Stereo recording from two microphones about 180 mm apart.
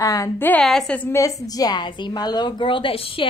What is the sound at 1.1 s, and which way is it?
A woman's voice, 20° left (ahead or behind).